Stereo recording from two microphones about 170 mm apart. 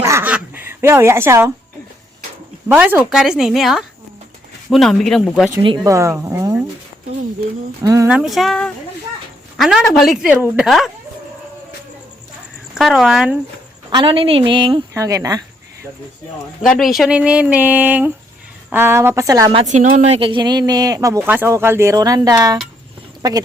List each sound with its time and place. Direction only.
0.0 s a sound: 15° right (ahead or behind)
2.6 s speech: 10° right (ahead or behind)
5.6 s speech: 25° right (ahead or behind)
7.9 s speech: 20° right (ahead or behind)
8.1 s a woman's voice: centre (ahead or behind)
12.7 s speech: 5° right (ahead or behind)
13.9 s speech: 30° right (ahead or behind)
16.6 s speech: 5° left (ahead or behind)
17.0 s speech: 5° right (ahead or behind); by 19.5 s 20° right (ahead or behind)
19.5 s speech: 45° right (ahead or behind); by 23.4 s 25° right (ahead or behind)